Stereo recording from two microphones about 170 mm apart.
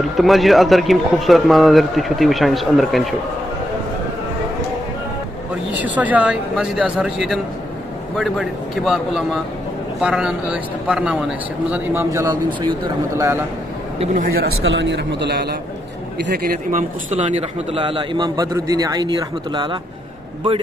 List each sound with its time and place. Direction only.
0.2 s a man's voice: centre (ahead or behind)
5.8 s a man's voice: 10° right (ahead or behind); by 13.3 s 25° right (ahead or behind)
14.2 s a man's voice: 65° right (ahead or behind)
16.3 s a man's voice: 60° right (ahead or behind)
17.1 s a man's voice: 40° right (ahead or behind)